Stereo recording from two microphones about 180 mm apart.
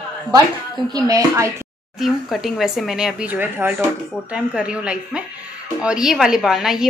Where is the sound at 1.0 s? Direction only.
20° right (ahead or behind).